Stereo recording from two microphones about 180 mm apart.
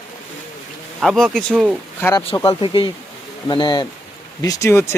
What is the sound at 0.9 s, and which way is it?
Speech, centre (ahead or behind).